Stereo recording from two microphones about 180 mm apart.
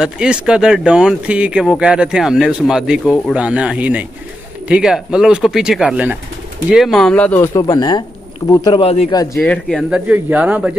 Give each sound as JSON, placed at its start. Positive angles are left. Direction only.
{"t": 0.0, "sound": "speech", "side_deg": -5}
{"t": 9.1, "sound": "speech", "side_deg": 20}
{"t": 9.4, "sound": "speech", "side_deg": 5}